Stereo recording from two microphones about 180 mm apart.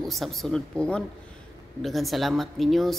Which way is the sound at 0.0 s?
Centre (ahead or behind).